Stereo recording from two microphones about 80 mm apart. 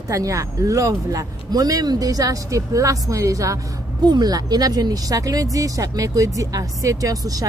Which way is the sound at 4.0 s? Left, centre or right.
Right.